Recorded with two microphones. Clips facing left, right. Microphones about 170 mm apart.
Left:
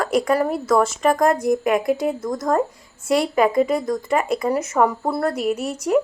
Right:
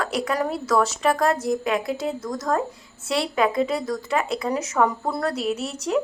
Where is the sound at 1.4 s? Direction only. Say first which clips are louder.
Left 5 dB; 50° left (ahead or behind).